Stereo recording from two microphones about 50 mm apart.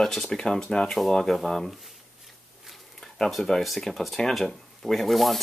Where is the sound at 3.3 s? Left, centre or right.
Centre.